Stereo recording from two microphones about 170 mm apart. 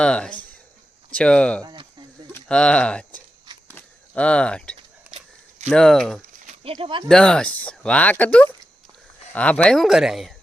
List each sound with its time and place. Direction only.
0.0 s speech: 5° left (ahead or behind)
1.6 s a sound: 25° right (ahead or behind)
2.3 s speech: 5° left (ahead or behind)
3.1 s a sound: 25° right (ahead or behind)
3.7 s walk: 10° left (ahead or behind)
5.1 s a sound: 40° right (ahead or behind)
5.7 s speech: 5° left (ahead or behind)
6.4 s speech: 40° right (ahead or behind)
7.1 s speech: 5° left (ahead or behind)